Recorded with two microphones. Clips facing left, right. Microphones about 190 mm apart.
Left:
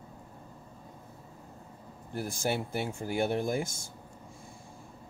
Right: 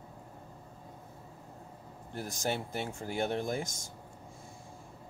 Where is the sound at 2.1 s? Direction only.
10° left (ahead or behind).